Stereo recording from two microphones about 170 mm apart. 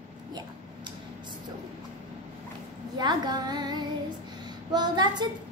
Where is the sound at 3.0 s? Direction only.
25° right (ahead or behind).